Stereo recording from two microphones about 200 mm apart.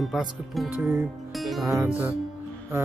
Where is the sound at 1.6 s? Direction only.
10° right (ahead or behind).